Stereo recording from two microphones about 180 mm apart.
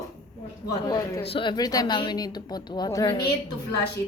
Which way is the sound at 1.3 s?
30° left (ahead or behind).